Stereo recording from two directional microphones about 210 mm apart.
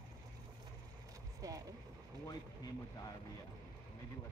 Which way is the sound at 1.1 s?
15° right (ahead or behind).